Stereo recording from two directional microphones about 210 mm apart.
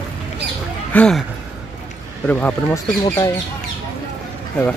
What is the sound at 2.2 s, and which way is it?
Speech, 10° left (ahead or behind).